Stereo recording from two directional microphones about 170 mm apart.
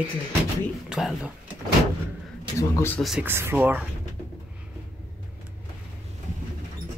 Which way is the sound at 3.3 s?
15° right (ahead or behind).